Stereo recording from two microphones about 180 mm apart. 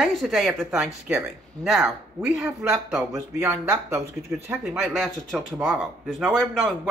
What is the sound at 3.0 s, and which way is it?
Speech, 15° right (ahead or behind).